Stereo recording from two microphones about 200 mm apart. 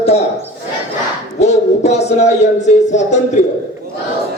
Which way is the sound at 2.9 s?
35° left (ahead or behind).